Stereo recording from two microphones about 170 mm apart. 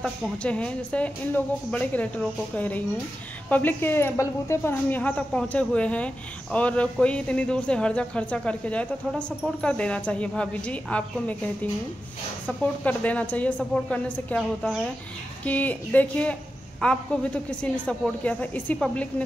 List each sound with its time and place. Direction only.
0.0 s a woman's voice: 5° left (ahead or behind)
12.4 s a woman's voice: 10° left (ahead or behind)